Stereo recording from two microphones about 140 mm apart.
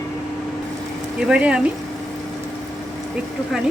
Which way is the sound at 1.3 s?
5° right (ahead or behind).